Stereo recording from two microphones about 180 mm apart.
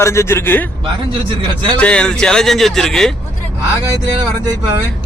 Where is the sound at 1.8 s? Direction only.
5° left (ahead or behind).